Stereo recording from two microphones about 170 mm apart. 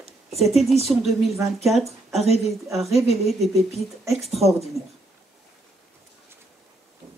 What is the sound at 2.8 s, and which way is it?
Speech, centre (ahead or behind).